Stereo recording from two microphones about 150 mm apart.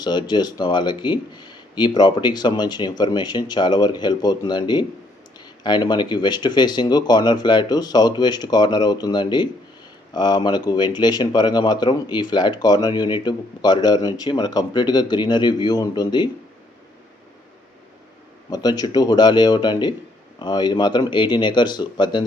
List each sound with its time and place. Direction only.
0.0 s speech: 30° left (ahead or behind)
18.5 s speech: 25° left (ahead or behind)